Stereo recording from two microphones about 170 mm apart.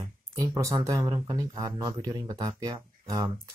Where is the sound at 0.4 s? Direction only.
20° right (ahead or behind).